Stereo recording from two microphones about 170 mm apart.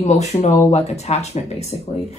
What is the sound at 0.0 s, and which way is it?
A woman's voice, 40° left (ahead or behind).